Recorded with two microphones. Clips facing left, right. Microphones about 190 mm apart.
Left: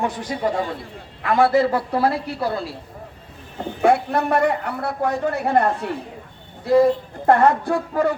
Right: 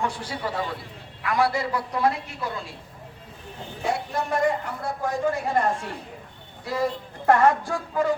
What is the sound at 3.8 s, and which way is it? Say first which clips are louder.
Speech: left 9 dB; 60° left (ahead or behind).